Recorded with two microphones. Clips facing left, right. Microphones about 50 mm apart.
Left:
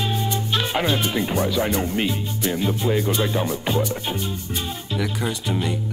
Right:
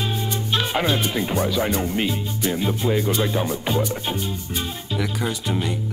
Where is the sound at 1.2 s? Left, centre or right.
Centre.